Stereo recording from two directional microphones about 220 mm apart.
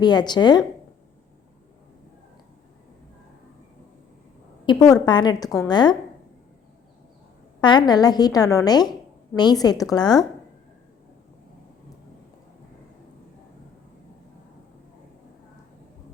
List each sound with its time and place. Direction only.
0.0 s a woman's voice: 20° left (ahead or behind)
4.6 s a woman's voice: 20° left (ahead or behind)
7.6 s a woman's voice: 20° left (ahead or behind)